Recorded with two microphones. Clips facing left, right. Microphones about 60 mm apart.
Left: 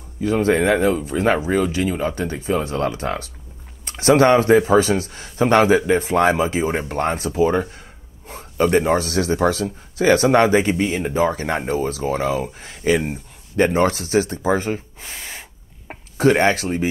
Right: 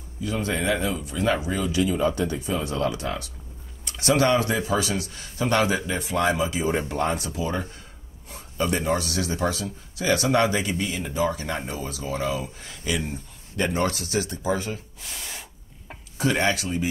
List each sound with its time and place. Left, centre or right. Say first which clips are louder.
0.2 s speech: left 9 dB; left
15.9 s speech: left 9 dB; left